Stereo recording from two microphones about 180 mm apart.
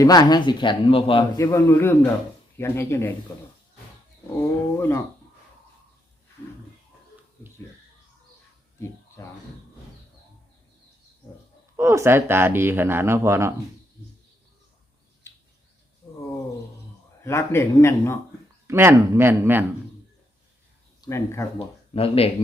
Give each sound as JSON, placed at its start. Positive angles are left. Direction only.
{"t": 0.0, "sound": "speech", "side_deg": 20}
{"t": 1.4, "sound": "speech", "side_deg": 15}
{"t": 4.4, "sound": "speech", "side_deg": 15}
{"t": 11.8, "sound": "speech", "side_deg": -15}
{"t": 17.2, "sound": "speech", "side_deg": 15}
{"t": 18.7, "sound": "speech", "side_deg": -15}
{"t": 21.0, "sound": "speech", "side_deg": 15}
{"t": 21.9, "sound": "speech", "side_deg": 35}